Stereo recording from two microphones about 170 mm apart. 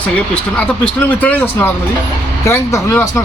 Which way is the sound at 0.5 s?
10° left (ahead or behind).